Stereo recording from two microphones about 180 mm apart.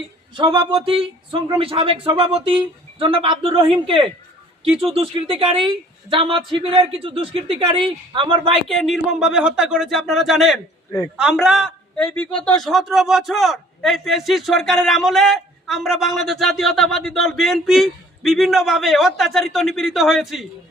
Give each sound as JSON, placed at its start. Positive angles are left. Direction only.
{"t": 0.3, "sound": "a woman's voice", "side_deg": -25}
{"t": 8.6, "sound": "a man's voice", "side_deg": 0}